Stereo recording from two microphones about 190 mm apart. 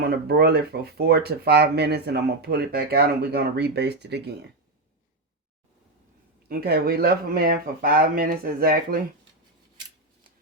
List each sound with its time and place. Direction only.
0.0 s speech: 55° right (ahead or behind)
6.5 s speech: 55° right (ahead or behind)